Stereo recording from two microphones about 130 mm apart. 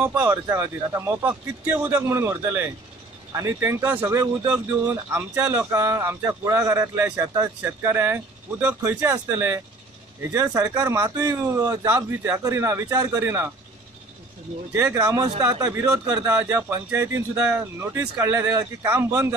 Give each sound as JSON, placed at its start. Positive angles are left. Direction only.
{"t": 0.0, "sound": "speech", "side_deg": -10}
{"t": 13.2, "sound": "speech", "side_deg": -15}
{"t": 14.7, "sound": "speech", "side_deg": -25}